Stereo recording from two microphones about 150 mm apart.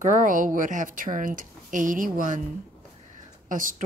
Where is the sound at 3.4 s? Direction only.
60° right (ahead or behind).